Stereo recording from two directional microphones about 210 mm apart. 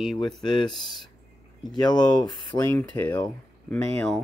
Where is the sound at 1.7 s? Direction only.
20° left (ahead or behind).